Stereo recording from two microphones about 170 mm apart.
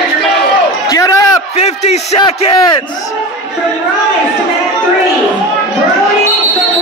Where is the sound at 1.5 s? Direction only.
40° left (ahead or behind).